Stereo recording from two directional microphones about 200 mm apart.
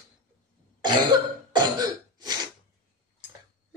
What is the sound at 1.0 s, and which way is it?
Cough, 20° right (ahead or behind).